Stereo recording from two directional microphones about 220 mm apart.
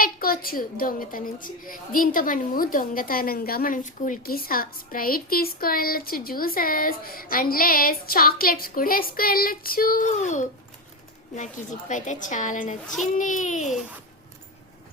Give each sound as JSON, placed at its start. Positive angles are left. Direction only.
{"t": 0.0, "sound": "a child's voice", "side_deg": 40}